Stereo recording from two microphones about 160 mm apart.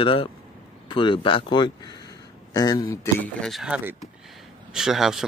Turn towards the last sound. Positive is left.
turn(degrees=-5)  # may be behind; listen again after turning